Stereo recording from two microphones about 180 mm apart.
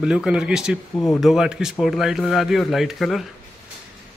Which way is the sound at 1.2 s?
5° right (ahead or behind).